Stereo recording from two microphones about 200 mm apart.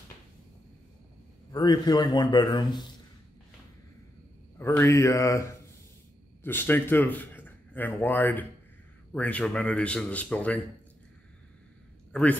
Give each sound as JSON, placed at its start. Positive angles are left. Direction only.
{"t": 1.5, "sound": "speech", "side_deg": 20}
{"t": 4.6, "sound": "speech", "side_deg": 15}
{"t": 12.1, "sound": "a man's voice", "side_deg": 5}